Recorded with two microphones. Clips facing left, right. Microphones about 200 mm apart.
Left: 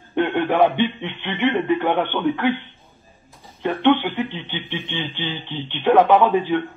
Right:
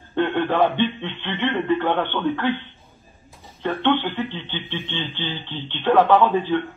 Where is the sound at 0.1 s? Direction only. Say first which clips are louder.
Left 1 dB; 15° left (ahead or behind).